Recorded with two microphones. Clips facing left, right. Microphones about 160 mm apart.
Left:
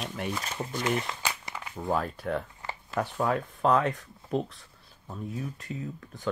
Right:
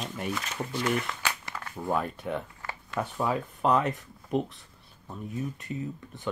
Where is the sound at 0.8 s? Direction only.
25° left (ahead or behind).